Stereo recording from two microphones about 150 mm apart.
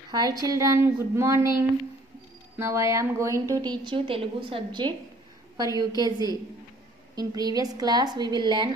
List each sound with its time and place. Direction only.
0.1 s a woman's voice: 25° right (ahead or behind)